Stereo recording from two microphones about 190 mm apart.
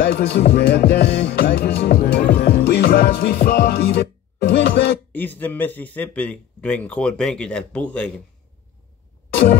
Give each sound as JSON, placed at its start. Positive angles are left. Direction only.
{"t": 0.0, "sound": "music", "side_deg": 60}
{"t": 5.1, "sound": "a man's voice", "side_deg": 10}